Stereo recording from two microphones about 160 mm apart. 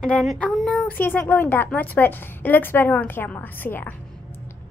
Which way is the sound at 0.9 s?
10° left (ahead or behind).